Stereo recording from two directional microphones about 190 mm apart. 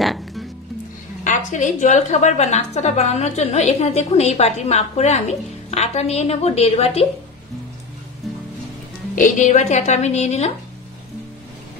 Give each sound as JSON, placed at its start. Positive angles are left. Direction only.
{"t": 0.0, "sound": "music", "side_deg": 0}
{"t": 1.2, "sound": "a woman's voice", "side_deg": 40}
{"t": 9.1, "sound": "a woman's voice", "side_deg": 40}